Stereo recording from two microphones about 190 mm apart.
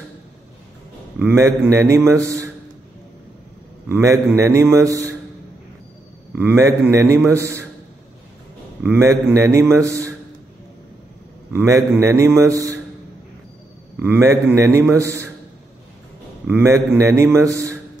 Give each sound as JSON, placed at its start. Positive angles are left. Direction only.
{"t": 1.2, "sound": "a man's voice", "side_deg": -15}
{"t": 3.9, "sound": "a man's voice", "side_deg": -15}
{"t": 6.3, "sound": "a man's voice", "side_deg": -10}
{"t": 8.8, "sound": "a man's voice", "side_deg": -15}
{"t": 11.5, "sound": "a man's voice", "side_deg": -15}
{"t": 14.0, "sound": "a man's voice", "side_deg": -10}
{"t": 16.4, "sound": "a man's voice", "side_deg": -10}